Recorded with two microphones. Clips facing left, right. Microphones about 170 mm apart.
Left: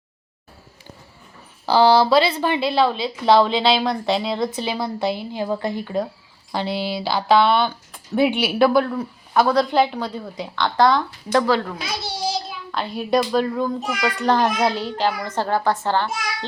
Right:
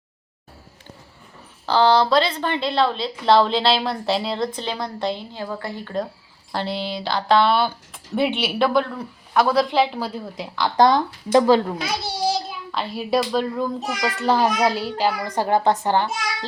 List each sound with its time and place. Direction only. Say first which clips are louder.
1.6 s a woman's voice: left 2 dB; 10° left (ahead or behind)
10.8 s speech: right 1 dB; 20° right (ahead or behind)
12.7 s a child's voice: left 2 dB; centre (ahead or behind); by 16.0 s 15° right (ahead or behind)